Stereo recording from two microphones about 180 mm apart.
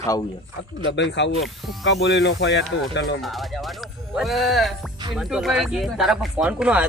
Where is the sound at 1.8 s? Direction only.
70° left (ahead or behind).